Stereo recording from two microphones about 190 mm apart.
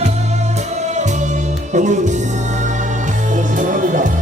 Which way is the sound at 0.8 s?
40° right (ahead or behind).